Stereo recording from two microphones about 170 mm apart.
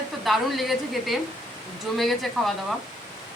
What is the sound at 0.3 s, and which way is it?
A woman's voice, centre (ahead or behind).